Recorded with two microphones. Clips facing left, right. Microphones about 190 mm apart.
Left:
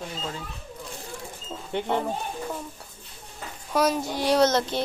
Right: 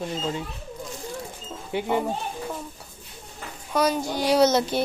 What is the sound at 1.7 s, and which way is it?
Speech, 10° right (ahead or behind).